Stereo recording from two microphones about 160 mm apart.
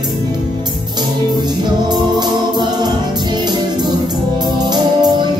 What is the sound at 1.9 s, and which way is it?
Music, 25° right (ahead or behind).